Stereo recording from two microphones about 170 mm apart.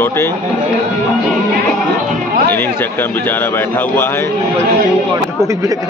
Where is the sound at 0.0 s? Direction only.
15° left (ahead or behind).